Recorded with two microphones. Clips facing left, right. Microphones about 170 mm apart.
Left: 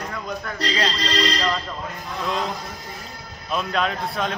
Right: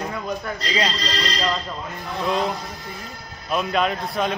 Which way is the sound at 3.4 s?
5° right (ahead or behind).